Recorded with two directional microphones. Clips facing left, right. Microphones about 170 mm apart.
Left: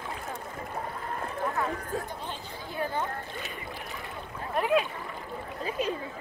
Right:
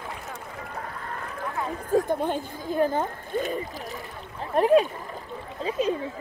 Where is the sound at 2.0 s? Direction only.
50° right (ahead or behind).